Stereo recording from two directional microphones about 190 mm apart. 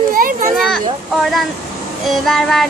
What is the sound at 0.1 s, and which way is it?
Children playing, 45° right (ahead or behind).